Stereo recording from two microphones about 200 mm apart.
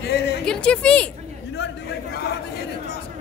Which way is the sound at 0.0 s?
55° left (ahead or behind).